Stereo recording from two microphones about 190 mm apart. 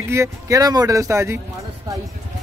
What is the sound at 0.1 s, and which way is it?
Speech, 15° right (ahead or behind).